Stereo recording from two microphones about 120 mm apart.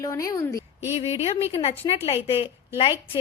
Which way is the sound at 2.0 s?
55° left (ahead or behind).